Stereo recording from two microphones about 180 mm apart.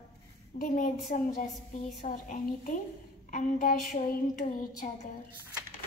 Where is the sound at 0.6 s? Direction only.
50° left (ahead or behind).